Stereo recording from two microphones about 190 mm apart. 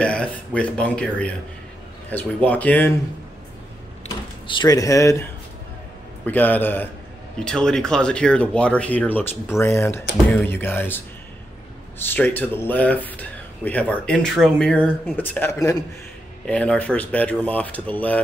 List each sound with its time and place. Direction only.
0.0 s speech: 5° left (ahead or behind)
4.5 s speech: 20° left (ahead or behind)
12.0 s speech: 10° left (ahead or behind)